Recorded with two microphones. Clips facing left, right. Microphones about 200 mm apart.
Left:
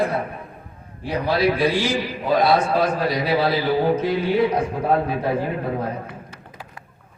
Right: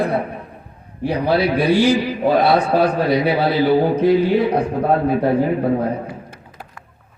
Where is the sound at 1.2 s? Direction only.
60° right (ahead or behind).